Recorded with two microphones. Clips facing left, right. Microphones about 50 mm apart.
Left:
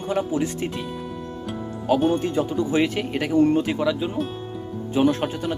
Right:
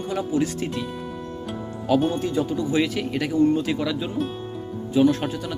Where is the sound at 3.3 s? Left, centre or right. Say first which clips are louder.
Left 2 dB; left.